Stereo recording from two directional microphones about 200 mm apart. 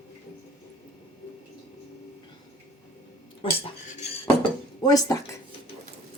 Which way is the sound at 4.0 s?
20° left (ahead or behind).